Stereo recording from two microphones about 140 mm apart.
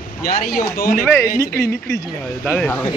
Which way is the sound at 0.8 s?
90° left.